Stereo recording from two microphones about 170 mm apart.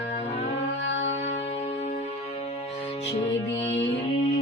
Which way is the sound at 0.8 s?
90° left.